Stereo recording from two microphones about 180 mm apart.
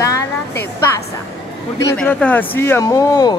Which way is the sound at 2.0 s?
5° left (ahead or behind).